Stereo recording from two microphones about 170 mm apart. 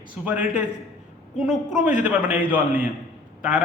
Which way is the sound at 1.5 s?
5° right (ahead or behind).